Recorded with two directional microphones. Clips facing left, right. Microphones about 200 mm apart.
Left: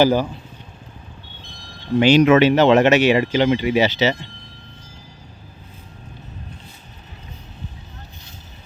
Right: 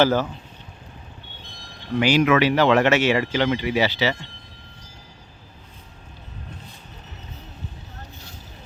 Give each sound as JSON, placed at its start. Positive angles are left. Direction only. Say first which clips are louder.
{"t": 0.0, "sound": "speech", "louder": "left 3 dB", "side_deg": 15}
{"t": 2.0, "sound": "speech", "louder": "left 5 dB", "side_deg": 25}